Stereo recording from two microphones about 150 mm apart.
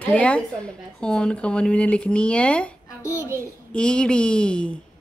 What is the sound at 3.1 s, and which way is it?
Speech, 15° right (ahead or behind).